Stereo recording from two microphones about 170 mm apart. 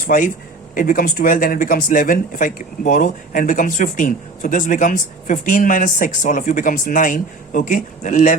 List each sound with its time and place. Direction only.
0.0 s speech: 55° left (ahead or behind)